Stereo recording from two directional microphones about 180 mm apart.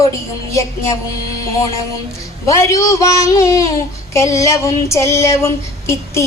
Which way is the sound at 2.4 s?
15° left (ahead or behind).